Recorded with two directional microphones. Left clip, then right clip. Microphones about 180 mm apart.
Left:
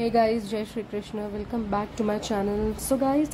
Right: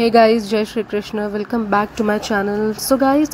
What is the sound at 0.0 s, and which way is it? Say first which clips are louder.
Speech: right 11 dB; 25° right (ahead or behind).